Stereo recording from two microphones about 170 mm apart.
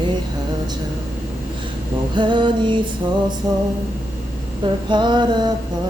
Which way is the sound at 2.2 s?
25° right (ahead or behind).